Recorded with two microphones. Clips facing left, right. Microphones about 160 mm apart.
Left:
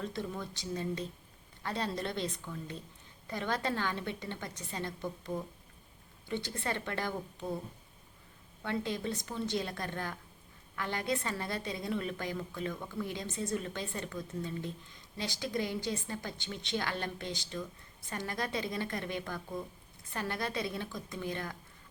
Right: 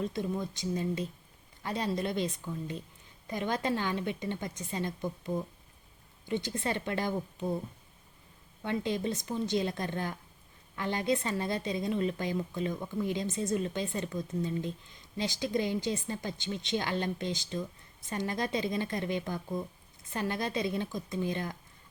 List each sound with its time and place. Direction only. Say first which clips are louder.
0.0 s a woman's voice: right 5 dB; 15° right (ahead or behind)
8.6 s a woman's voice: right 3 dB; 20° right (ahead or behind)